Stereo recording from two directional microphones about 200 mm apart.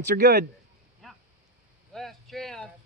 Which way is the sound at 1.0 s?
Centre (ahead or behind).